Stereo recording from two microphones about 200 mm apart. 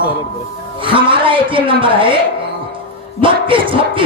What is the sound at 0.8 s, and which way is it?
Speech, 25° right (ahead or behind).